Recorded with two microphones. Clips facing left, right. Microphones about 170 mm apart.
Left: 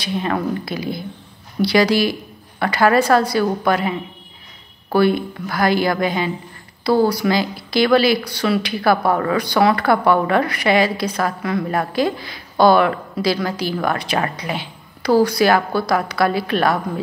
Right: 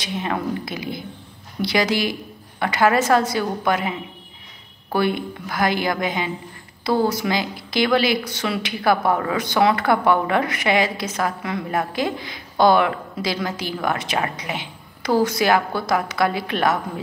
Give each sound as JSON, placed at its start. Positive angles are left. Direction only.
{"t": 0.0, "sound": "speech", "side_deg": -15}
{"t": 4.9, "sound": "speech", "side_deg": -15}